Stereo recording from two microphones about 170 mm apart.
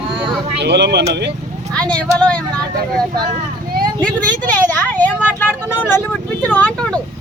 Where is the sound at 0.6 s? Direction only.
80° right.